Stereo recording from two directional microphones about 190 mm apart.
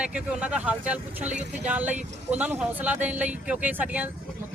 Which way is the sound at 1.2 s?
40° right (ahead or behind).